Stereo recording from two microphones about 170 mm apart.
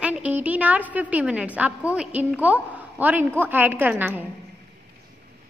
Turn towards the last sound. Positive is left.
turn(degrees=-10)  # may be behind; listen again after turning